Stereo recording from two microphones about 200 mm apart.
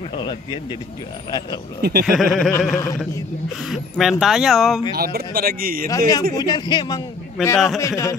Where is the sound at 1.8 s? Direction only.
50° right (ahead or behind).